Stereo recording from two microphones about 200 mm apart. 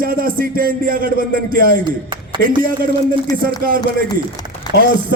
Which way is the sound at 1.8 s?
25° right (ahead or behind).